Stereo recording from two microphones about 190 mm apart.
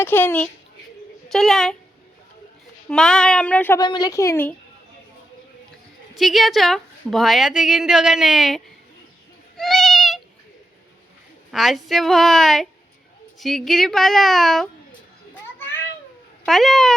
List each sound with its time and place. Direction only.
0.0 s a woman's voice: 10° left (ahead or behind)
2.9 s a woman's voice: 5° left (ahead or behind)
3.8 s a woman's voice: 20° left (ahead or behind)
6.1 s a woman's voice: centre (ahead or behind)
9.6 s goat: centre (ahead or behind)
11.5 s a woman's voice: centre (ahead or behind)
16.5 s a woman's voice: centre (ahead or behind)